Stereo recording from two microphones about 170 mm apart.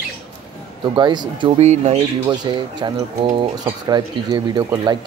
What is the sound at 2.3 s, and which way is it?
Speech, 25° right (ahead or behind).